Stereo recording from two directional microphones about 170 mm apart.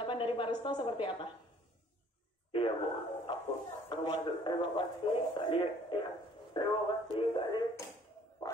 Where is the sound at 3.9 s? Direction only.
30° left (ahead or behind).